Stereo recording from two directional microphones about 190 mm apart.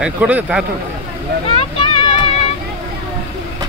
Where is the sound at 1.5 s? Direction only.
25° left (ahead or behind).